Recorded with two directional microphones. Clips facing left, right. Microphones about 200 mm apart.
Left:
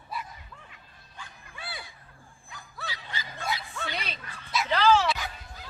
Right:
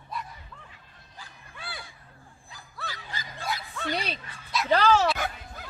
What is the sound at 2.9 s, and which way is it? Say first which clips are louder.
Music: left 1 dB; 50° right (ahead or behind).